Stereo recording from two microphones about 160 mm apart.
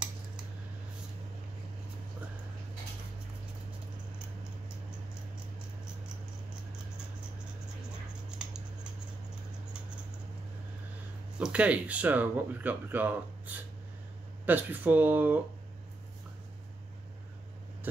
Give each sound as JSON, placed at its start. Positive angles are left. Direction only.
{"t": 11.3, "sound": "speech", "side_deg": -5}